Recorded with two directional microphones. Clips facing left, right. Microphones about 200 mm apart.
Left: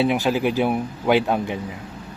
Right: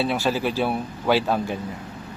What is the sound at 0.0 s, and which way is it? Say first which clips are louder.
Speech: left 3 dB; 15° left (ahead or behind).